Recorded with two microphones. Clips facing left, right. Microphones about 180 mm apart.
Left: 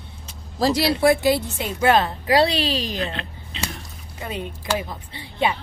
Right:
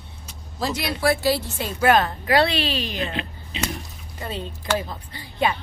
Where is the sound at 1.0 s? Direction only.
20° left (ahead or behind); by 3.1 s 35° left (ahead or behind).